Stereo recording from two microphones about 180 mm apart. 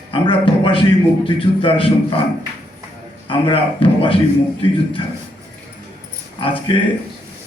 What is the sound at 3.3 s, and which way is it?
Speech, 30° left (ahead or behind).